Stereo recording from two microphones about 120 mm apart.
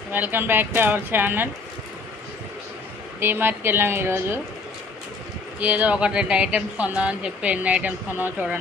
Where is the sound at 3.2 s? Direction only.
20° right (ahead or behind).